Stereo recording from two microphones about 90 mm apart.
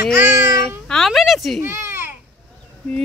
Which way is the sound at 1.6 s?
25° right (ahead or behind).